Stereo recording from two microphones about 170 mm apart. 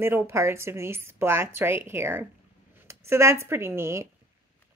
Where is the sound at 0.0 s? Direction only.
15° right (ahead or behind).